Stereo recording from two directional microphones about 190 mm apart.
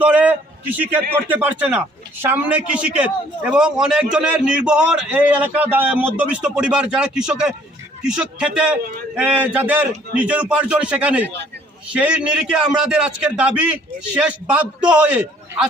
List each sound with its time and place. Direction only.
0.0 s a man's voice: 10° right (ahead or behind)